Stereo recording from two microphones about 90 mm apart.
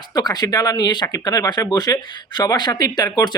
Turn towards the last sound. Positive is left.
turn(degrees=50)  # may be behind; listen again after turning